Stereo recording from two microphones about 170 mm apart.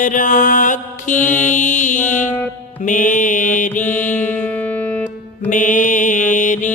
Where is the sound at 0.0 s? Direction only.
50° left (ahead or behind).